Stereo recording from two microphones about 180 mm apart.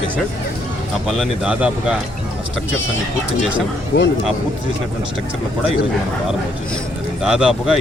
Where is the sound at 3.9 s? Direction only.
65° left (ahead or behind).